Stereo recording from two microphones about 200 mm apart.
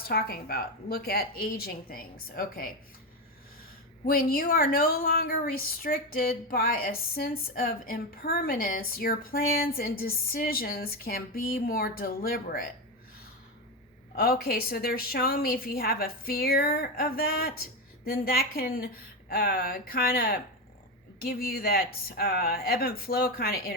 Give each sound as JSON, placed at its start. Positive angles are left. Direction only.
{"t": 0.1, "sound": "speech", "side_deg": 50}
{"t": 4.0, "sound": "speech", "side_deg": 45}
{"t": 14.2, "sound": "speech", "side_deg": 50}